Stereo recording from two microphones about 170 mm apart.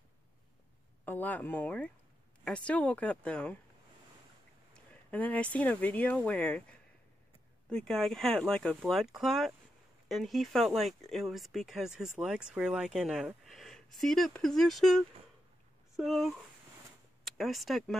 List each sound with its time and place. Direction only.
1.0 s speech: 10° left (ahead or behind)
5.1 s speech: 10° left (ahead or behind)